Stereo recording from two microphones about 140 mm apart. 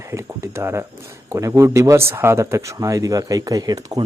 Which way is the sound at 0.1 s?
20° right (ahead or behind).